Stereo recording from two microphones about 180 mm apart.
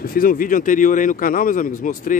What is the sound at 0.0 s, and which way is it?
Speech, 55° left (ahead or behind).